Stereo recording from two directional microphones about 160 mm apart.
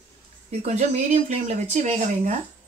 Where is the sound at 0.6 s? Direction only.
40° right (ahead or behind).